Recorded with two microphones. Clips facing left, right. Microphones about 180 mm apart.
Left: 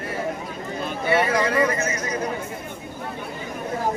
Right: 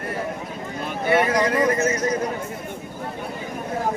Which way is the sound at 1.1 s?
50° right (ahead or behind).